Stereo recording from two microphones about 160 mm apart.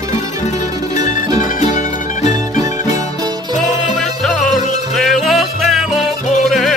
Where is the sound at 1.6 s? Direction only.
50° left (ahead or behind).